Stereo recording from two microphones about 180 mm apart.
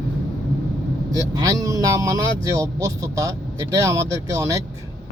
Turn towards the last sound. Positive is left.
turn(degrees=-20)  # may be behind; listen again after turning